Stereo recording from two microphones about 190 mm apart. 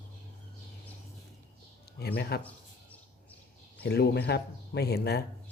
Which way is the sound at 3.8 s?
60° left (ahead or behind).